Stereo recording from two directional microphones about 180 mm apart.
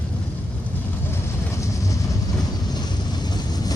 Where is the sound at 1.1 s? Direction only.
15° left (ahead or behind).